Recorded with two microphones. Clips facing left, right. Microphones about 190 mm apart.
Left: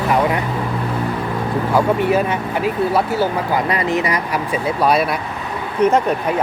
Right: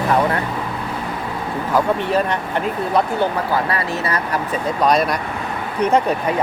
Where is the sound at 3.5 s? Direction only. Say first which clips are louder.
Left 3 dB; 20° left (ahead or behind).